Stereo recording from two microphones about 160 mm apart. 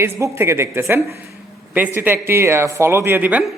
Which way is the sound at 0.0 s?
15° right (ahead or behind).